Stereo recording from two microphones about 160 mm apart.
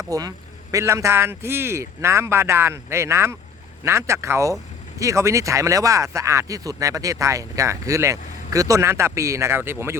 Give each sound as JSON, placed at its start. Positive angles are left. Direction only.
{"t": 0.1, "sound": "speech", "side_deg": -20}